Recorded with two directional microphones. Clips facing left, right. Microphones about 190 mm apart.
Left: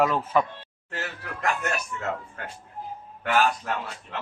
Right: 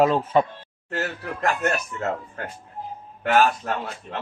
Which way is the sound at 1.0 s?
40° right (ahead or behind).